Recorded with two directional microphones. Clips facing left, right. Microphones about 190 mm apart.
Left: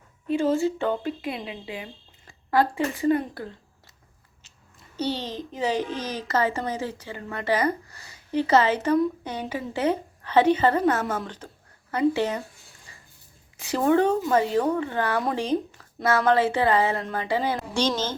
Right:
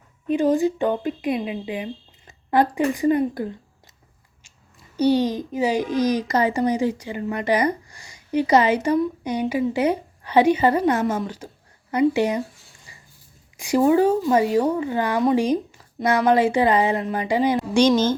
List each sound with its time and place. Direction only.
0.3 s a woman's voice: 15° right (ahead or behind)
4.9 s a woman's voice: 10° right (ahead or behind)
12.9 s dog: 10° right (ahead or behind)
13.6 s a woman's voice: 10° right (ahead or behind)